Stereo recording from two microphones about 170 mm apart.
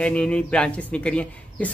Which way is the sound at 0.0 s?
5° left (ahead or behind).